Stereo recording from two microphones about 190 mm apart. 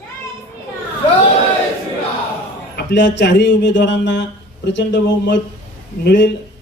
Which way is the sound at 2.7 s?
70° left (ahead or behind).